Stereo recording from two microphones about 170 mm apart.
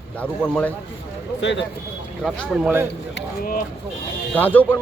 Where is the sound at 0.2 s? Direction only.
10° left (ahead or behind).